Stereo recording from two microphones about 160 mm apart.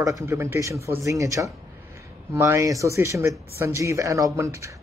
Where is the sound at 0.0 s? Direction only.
20° right (ahead or behind).